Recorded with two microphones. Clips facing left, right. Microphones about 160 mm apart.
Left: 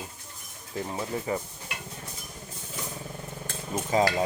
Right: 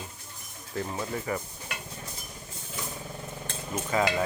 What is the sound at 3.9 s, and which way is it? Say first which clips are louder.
Speech: left 3 dB; 20° left (ahead or behind).